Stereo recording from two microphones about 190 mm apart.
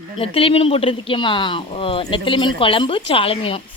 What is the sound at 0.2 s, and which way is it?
Speech, 30° left (ahead or behind).